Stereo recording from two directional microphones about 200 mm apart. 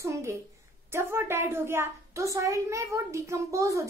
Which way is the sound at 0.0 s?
15° right (ahead or behind).